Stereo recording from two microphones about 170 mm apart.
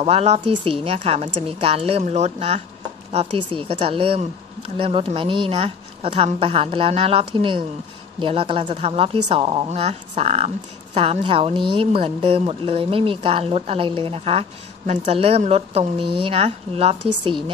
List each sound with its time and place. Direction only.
0.0 s speech: 40° right (ahead or behind)